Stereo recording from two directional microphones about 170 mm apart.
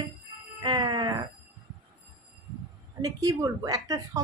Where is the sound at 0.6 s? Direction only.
25° right (ahead or behind).